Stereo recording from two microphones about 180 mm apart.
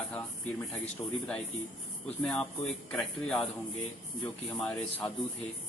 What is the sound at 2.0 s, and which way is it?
Speech, 5° left (ahead or behind).